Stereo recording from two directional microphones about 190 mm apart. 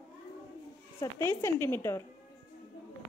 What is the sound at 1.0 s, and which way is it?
Speech, 15° left (ahead or behind).